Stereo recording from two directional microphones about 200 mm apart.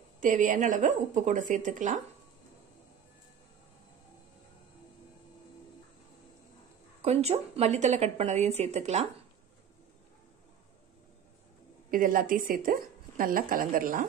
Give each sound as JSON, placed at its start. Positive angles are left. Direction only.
{"t": 0.2, "sound": "a woman's voice", "side_deg": -40}
{"t": 7.0, "sound": "a woman's voice", "side_deg": -30}
{"t": 11.9, "sound": "a woman's voice", "side_deg": -45}